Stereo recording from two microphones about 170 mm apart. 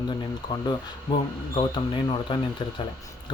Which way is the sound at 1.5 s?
25° left (ahead or behind).